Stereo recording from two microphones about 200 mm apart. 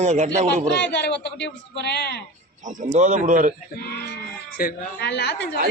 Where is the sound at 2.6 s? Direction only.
40° right (ahead or behind).